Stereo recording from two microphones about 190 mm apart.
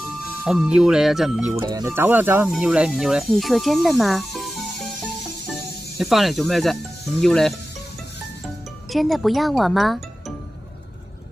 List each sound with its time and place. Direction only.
0.4 s speech: 5° right (ahead or behind)
1.6 s speech: 15° right (ahead or behind); by 7.5 s centre (ahead or behind)
8.9 s speech: centre (ahead or behind)